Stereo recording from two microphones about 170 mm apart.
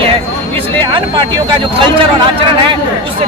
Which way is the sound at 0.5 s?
30° right (ahead or behind).